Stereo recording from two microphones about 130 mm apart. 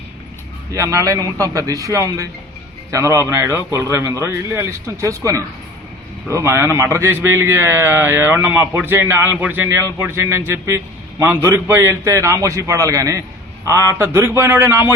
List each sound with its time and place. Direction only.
0.7 s a man's voice: 25° right (ahead or behind)